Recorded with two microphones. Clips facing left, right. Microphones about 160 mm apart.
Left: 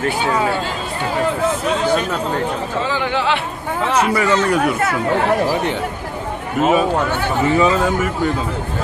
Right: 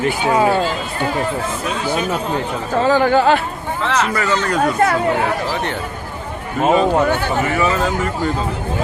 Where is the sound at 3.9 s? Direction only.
10° left (ahead or behind).